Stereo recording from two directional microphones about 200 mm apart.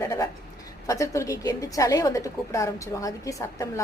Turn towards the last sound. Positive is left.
turn(degrees=15)  # may be behind; listen again after turning